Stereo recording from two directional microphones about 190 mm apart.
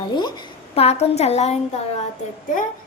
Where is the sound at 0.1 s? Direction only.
25° left (ahead or behind).